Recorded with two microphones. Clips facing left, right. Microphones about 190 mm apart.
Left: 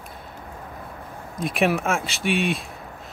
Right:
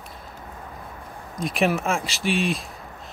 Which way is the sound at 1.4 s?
Centre (ahead or behind).